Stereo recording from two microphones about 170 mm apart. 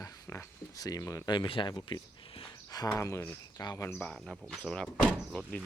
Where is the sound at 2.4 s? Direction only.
20° left (ahead or behind).